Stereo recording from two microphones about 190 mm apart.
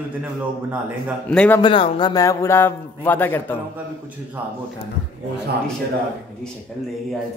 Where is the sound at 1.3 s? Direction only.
5° left (ahead or behind).